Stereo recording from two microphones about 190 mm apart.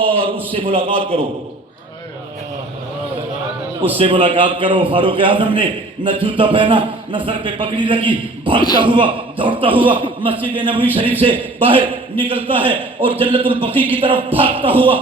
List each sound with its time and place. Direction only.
0.0 s a man's voice: 30° right (ahead or behind)
3.9 s a man's voice: 30° right (ahead or behind)